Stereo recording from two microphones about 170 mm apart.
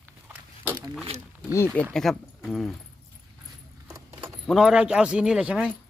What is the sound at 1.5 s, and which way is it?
Speech, 10° left (ahead or behind).